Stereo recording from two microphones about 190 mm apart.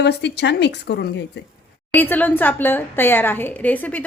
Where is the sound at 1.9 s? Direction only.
10° left (ahead or behind).